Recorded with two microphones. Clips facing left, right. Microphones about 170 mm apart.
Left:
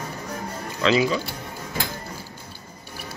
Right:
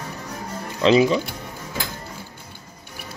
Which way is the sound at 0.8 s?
25° right (ahead or behind).